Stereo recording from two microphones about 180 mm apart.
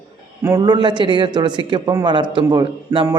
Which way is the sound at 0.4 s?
20° right (ahead or behind).